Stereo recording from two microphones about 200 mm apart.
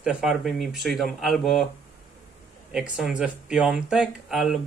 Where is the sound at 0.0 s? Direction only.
5° right (ahead or behind).